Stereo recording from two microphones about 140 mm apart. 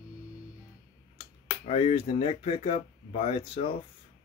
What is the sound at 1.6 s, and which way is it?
Speech, 50° left (ahead or behind).